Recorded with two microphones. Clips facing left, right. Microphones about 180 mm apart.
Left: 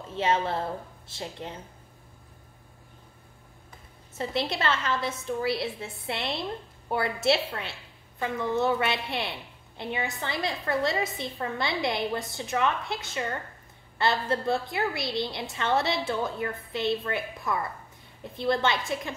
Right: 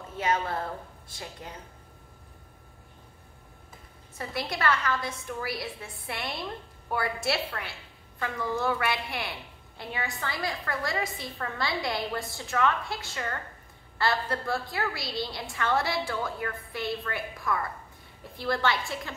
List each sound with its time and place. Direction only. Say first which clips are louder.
0.1 s a woman's voice: left 2 dB; 25° left (ahead or behind)
4.2 s a woman's voice: left 3 dB; 25° left (ahead or behind)